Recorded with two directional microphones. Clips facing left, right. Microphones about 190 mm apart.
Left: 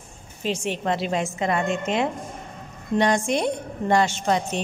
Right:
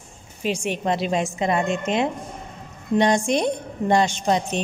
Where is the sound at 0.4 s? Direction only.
10° right (ahead or behind).